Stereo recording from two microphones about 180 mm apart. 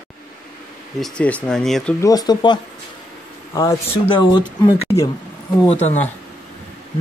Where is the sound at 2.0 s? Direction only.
20° left (ahead or behind).